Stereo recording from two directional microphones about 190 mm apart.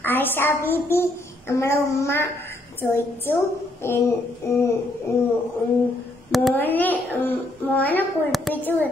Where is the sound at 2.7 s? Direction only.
10° left (ahead or behind).